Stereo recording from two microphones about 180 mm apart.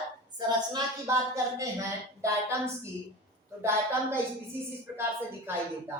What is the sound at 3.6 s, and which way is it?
A woman's voice, 10° right (ahead or behind).